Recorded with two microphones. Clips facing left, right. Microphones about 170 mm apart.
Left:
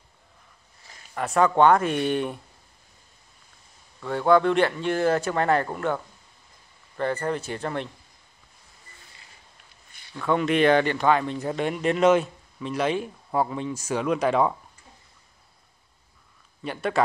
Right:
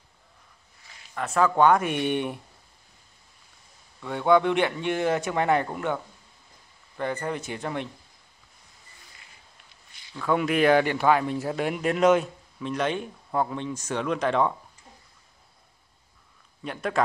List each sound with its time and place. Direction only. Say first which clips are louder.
1.3 s speech: left 2 dB; 5° right (ahead or behind)
4.0 s a man's voice: left 3 dB; centre (ahead or behind)
4.3 s speech: left 1 dB; 15° right (ahead or behind)
7.0 s speech: left 3 dB; 15° right (ahead or behind)
10.2 s speech: left 1 dB; 5° right (ahead or behind)
16.6 s speech: left 2 dB; centre (ahead or behind)